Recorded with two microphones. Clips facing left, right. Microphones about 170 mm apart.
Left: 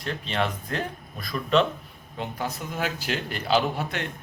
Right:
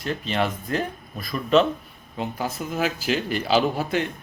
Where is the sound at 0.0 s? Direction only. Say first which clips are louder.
Right 3 dB; 5° right (ahead or behind).